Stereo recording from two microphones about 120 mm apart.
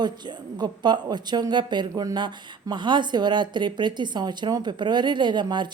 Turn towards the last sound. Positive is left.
turn(degrees=-40)  # may be behind; listen again after turning